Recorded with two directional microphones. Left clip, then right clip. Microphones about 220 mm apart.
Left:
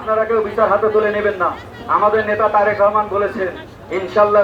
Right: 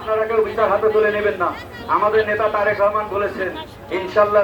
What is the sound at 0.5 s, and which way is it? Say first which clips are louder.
Speech: left 4 dB; 10° left (ahead or behind).